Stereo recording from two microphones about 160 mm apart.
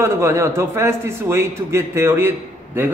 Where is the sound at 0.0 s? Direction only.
15° right (ahead or behind).